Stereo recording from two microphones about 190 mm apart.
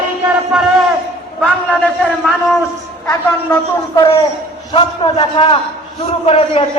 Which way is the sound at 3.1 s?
15° left (ahead or behind).